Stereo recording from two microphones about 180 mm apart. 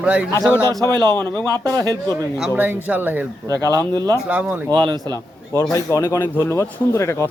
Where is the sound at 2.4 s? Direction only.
10° right (ahead or behind).